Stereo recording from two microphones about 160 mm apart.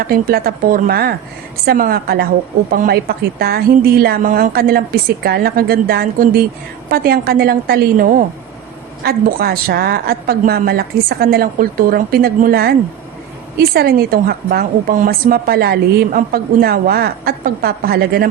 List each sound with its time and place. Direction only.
0.1 s a woman's voice: 70° right (ahead or behind)